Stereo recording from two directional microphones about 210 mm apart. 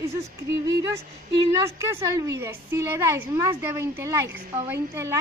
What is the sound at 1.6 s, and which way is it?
A woman's voice, 15° right (ahead or behind).